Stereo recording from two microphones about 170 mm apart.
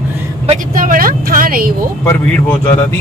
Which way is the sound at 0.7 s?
55° right (ahead or behind).